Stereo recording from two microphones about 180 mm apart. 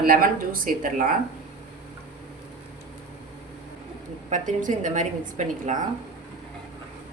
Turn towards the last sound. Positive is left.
turn(degrees=-40)  # may be behind; listen again after turning